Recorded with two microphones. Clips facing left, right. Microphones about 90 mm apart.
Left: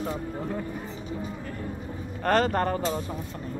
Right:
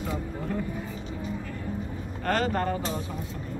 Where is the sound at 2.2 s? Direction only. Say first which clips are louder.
Left 3 dB; 40° left (ahead or behind).